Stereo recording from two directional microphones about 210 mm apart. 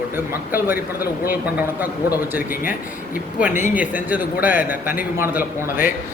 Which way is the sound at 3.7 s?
5° right (ahead or behind).